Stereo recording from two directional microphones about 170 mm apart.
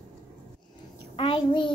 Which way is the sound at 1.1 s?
30° left (ahead or behind).